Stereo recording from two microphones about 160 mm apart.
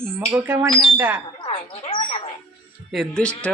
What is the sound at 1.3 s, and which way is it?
Speech, 35° left (ahead or behind).